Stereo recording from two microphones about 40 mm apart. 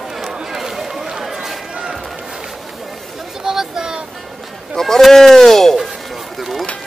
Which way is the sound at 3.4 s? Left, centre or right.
Centre.